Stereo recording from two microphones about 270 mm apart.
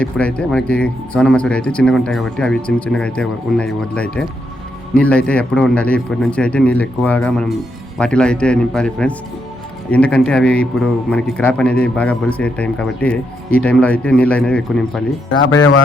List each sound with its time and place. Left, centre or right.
0.0 s a man's voice: centre
15.4 s speech: left